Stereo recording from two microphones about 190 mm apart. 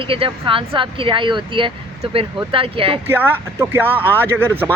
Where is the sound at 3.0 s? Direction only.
10° right (ahead or behind).